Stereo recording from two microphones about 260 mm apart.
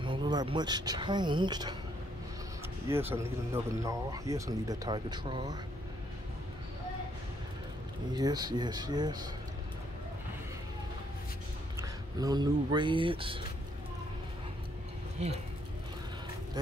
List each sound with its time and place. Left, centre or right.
0.0 s speech: centre
2.9 s speech: centre
8.1 s speech: centre
12.2 s speech: centre
15.2 s speech: right